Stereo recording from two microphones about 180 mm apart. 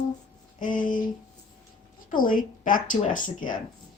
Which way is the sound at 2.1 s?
50° left (ahead or behind).